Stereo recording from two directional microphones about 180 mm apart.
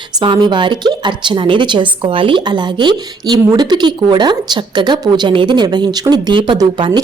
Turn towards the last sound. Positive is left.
turn(degrees=-25)  # may be behind; listen again after turning